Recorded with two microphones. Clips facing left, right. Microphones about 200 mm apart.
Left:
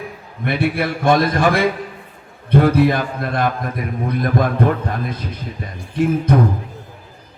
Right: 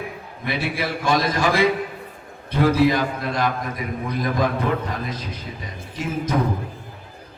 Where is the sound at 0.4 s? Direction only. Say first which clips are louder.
Left 6 dB; 55° left (ahead or behind).